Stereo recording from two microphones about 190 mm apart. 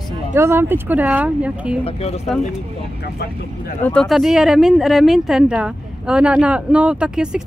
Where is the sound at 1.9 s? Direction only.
35° left (ahead or behind).